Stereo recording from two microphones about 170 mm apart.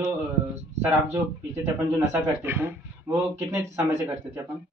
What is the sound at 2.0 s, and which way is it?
Speech, 15° right (ahead or behind).